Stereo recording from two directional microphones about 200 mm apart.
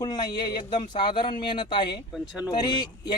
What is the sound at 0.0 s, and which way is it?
Speech, 20° left (ahead or behind).